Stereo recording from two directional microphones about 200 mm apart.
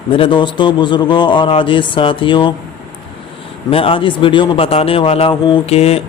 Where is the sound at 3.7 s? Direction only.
25° left (ahead or behind).